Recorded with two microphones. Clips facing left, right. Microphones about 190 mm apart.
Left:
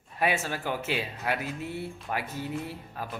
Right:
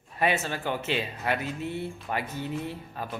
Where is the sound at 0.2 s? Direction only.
5° left (ahead or behind).